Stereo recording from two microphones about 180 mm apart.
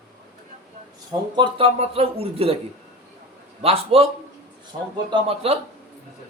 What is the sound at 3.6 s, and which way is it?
Speech, 35° right (ahead or behind).